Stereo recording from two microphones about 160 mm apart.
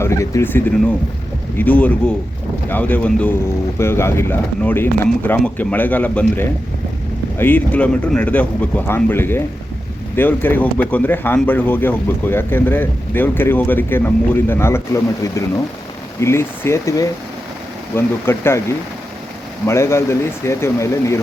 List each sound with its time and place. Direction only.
0.0 s speech: 20° left (ahead or behind)
19.6 s speech: 15° left (ahead or behind)